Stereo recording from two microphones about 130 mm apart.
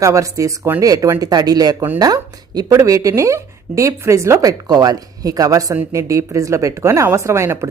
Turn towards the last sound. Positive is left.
turn(degrees=-20)  # may be behind; listen again after turning